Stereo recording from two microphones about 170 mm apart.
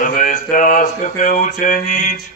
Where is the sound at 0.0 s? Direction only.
50° left (ahead or behind).